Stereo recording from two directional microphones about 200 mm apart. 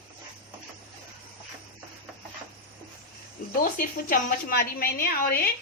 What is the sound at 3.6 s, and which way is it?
A woman's voice, 45° left (ahead or behind).